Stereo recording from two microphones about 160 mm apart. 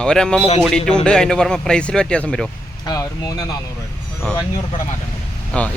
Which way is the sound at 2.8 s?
20° left (ahead or behind).